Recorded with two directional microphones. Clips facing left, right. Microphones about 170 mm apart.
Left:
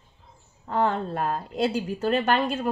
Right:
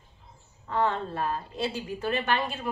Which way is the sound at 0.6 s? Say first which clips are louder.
Left 3 dB; 45° left (ahead or behind).